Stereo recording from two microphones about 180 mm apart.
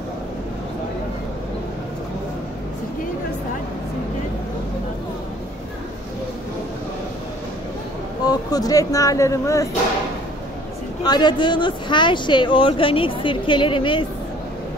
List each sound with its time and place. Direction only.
8.3 s speech: 20° left (ahead or behind)
11.1 s speech: 25° left (ahead or behind)